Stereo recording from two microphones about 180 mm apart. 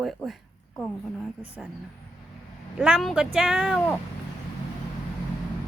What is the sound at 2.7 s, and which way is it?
Speech, 5° right (ahead or behind).